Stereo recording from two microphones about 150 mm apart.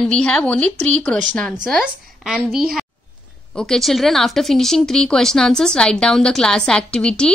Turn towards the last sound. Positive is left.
turn(degrees=5)  # may be behind; listen again after turning